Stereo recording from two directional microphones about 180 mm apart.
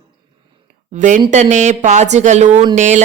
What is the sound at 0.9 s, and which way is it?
Speech, 45° right (ahead or behind).